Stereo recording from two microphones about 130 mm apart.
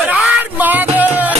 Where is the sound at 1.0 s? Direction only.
10° right (ahead or behind).